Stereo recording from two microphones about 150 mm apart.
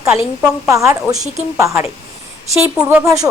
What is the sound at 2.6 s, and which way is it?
Speech, 15° right (ahead or behind).